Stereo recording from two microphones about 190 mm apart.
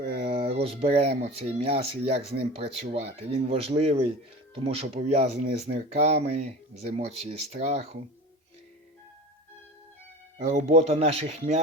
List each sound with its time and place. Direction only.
0.0 s a sound: 35° right (ahead or behind)
1.2 s speech: 30° right (ahead or behind)
10.3 s speech: 40° right (ahead or behind)